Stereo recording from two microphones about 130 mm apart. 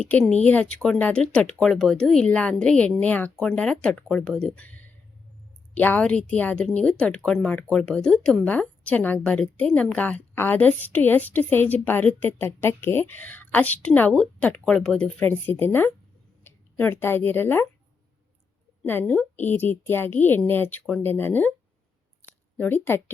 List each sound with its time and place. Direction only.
0.0 s speech: 10° left (ahead or behind)
18.9 s speech: 15° left (ahead or behind)
22.5 s speech: 15° left (ahead or behind)